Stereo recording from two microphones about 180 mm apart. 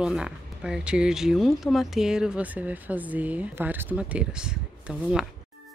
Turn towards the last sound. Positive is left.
turn(degrees=-5)  # may be behind; listen again after turning